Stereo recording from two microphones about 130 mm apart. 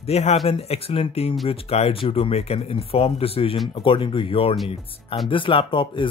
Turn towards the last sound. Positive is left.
turn(degrees=40)  # may be behind; listen again after turning